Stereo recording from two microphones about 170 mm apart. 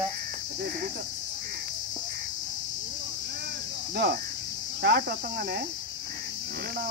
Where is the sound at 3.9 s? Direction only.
70° right (ahead or behind).